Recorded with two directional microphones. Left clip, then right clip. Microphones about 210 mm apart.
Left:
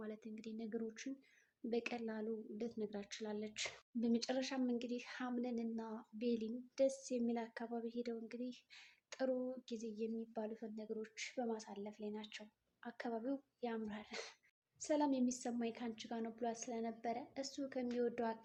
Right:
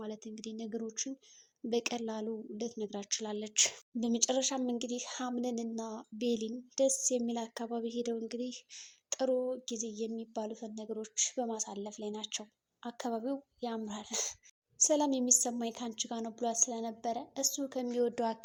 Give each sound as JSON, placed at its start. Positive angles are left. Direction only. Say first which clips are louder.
{"t": 0.0, "sound": "a woman's voice", "louder": "right 7 dB", "side_deg": -35}